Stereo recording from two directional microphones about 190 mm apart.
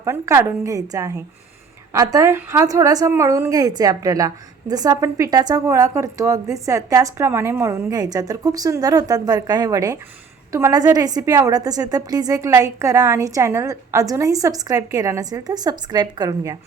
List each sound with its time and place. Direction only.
0.0 s a woman's voice: 15° right (ahead or behind)